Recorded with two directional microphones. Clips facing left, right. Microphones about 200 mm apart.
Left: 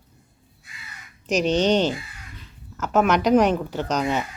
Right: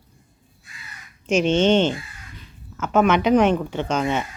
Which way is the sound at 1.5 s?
35° left (ahead or behind).